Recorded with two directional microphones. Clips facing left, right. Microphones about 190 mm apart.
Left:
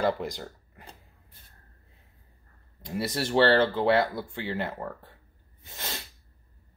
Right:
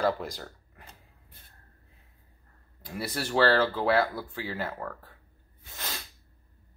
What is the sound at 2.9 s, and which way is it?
Speech, 25° left (ahead or behind).